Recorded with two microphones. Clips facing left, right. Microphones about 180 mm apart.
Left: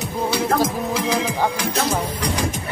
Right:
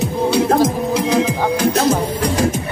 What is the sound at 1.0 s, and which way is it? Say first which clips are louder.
Music: right 4 dB; centre (ahead or behind).